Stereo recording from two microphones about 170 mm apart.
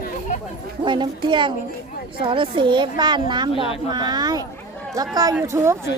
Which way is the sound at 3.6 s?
35° left (ahead or behind).